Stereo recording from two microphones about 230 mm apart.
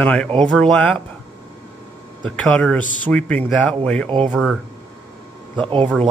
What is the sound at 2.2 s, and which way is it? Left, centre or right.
Speech, centre.